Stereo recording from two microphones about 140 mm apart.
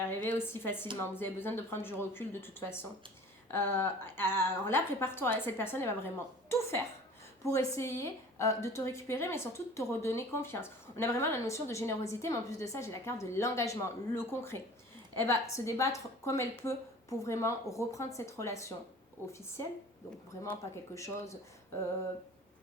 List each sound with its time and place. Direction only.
0.0 s a woman's voice: 15° left (ahead or behind)
20.6 s a woman's voice: 20° left (ahead or behind)